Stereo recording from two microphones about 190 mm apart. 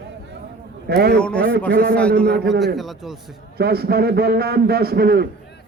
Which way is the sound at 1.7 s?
50° right (ahead or behind).